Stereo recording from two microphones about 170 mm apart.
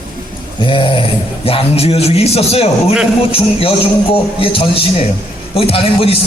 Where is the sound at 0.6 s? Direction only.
30° left (ahead or behind).